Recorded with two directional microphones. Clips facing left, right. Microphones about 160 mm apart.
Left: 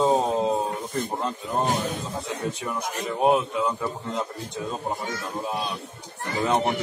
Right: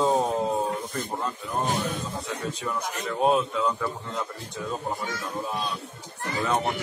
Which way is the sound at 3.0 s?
20° left (ahead or behind).